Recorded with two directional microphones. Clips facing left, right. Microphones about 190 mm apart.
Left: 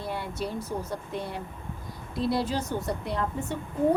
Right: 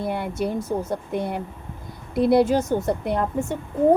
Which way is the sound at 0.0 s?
55° right (ahead or behind).